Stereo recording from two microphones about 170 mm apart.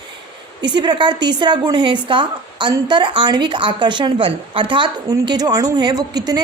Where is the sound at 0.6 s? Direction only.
25° right (ahead or behind).